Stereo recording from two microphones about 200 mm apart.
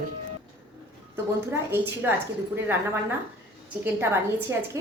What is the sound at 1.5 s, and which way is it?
Speech, 10° right (ahead or behind).